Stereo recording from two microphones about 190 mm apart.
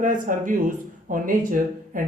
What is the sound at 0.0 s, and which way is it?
Speech, 45° right (ahead or behind).